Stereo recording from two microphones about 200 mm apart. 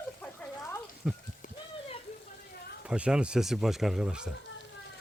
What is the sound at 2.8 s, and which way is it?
Speech, 5° right (ahead or behind).